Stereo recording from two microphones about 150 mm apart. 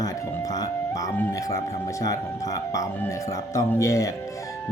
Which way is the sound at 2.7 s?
20° left (ahead or behind).